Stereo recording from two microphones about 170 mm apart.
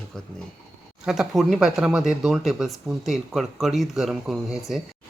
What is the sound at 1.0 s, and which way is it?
Speech, 5° right (ahead or behind).